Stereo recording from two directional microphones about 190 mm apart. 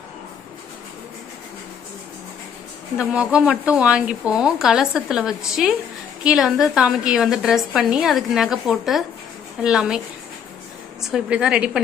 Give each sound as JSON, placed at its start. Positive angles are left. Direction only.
{"t": 3.0, "sound": "a woman's voice", "side_deg": -5}
{"t": 11.1, "sound": "a woman's voice", "side_deg": -5}